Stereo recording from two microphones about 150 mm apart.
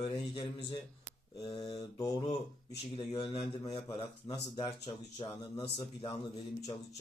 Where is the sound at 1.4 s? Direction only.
30° left (ahead or behind).